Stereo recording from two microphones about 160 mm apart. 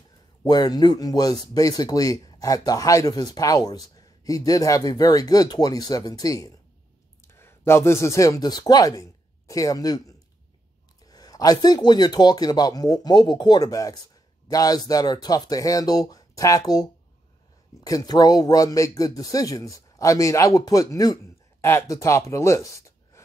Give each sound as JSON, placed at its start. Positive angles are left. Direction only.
{"t": 0.4, "sound": "a man's voice", "side_deg": 25}
{"t": 17.8, "sound": "a man's voice", "side_deg": 25}